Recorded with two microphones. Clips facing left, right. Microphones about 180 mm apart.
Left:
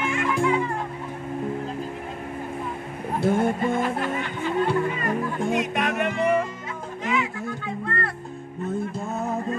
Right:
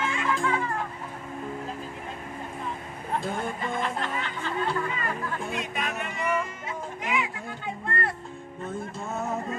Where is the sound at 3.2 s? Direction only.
70° left (ahead or behind).